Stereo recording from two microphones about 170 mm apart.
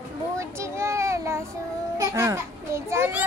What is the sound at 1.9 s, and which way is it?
Children playing, 15° right (ahead or behind).